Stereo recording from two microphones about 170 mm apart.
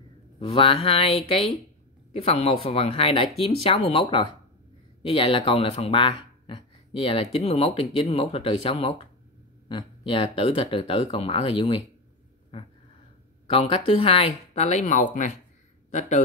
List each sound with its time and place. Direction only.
0.4 s speech: 35° left (ahead or behind)